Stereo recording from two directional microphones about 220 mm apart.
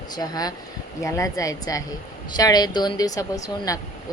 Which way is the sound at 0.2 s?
15° left (ahead or behind).